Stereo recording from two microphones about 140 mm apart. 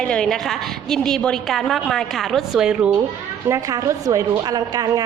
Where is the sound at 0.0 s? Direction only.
5° left (ahead or behind).